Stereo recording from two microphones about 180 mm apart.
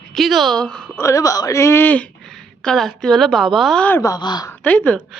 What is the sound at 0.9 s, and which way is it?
Speech, 15° left (ahead or behind).